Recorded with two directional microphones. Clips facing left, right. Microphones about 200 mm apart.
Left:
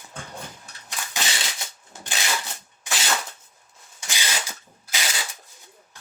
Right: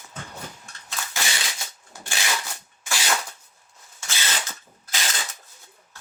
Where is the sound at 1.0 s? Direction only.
15° left (ahead or behind).